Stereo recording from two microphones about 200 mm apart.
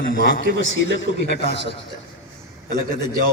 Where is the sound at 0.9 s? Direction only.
60° left (ahead or behind).